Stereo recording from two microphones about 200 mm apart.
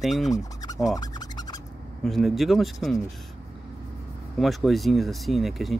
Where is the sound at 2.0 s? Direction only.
Centre (ahead or behind).